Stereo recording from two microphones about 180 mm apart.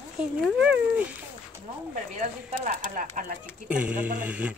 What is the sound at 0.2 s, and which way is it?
Speech, 5° right (ahead or behind).